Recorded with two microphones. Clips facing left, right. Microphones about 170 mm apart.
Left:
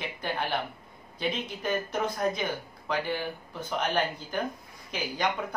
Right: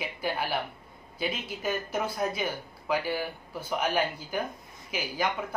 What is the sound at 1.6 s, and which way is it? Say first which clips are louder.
Speech: left 1 dB; 5° right (ahead or behind).